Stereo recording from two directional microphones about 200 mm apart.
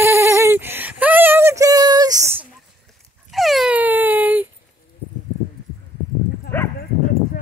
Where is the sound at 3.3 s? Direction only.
Centre (ahead or behind).